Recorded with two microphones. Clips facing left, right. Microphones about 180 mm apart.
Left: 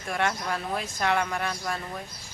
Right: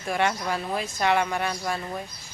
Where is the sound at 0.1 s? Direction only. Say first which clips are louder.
Right 3 dB; centre (ahead or behind).